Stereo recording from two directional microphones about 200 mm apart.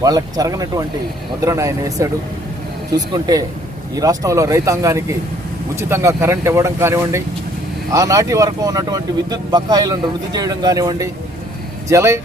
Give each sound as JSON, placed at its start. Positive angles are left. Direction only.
{"t": 0.0, "sound": "speech", "side_deg": -20}